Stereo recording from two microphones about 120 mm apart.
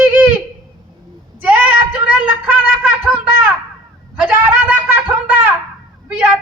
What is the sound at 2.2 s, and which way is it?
Speech, 15° right (ahead or behind).